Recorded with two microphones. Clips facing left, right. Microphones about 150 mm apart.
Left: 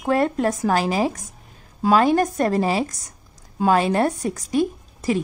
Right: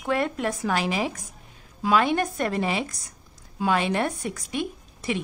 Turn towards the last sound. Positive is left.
turn(degrees=35)  # may be behind; listen again after turning